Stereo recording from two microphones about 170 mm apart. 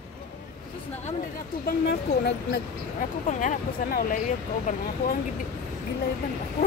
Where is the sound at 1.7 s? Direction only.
85° left.